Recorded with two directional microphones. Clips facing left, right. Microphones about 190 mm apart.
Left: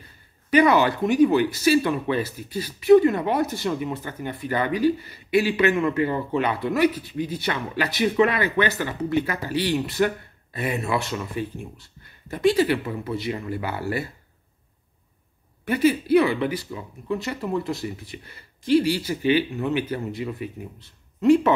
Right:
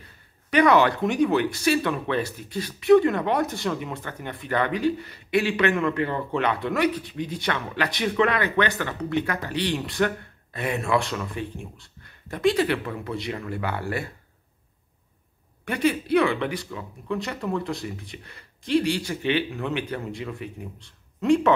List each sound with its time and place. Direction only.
0.5 s speech: centre (ahead or behind)
15.6 s speech: 5° left (ahead or behind)